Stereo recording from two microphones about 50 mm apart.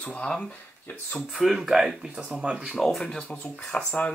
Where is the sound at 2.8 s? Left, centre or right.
Centre.